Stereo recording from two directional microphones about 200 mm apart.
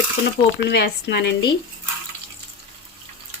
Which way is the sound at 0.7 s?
55° left (ahead or behind).